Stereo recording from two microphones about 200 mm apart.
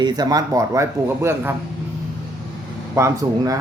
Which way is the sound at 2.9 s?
15° right (ahead or behind).